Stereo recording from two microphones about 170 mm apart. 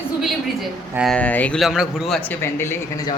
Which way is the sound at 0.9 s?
Centre (ahead or behind).